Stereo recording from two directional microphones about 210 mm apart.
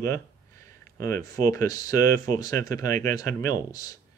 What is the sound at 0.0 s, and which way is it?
Speech, 15° left (ahead or behind).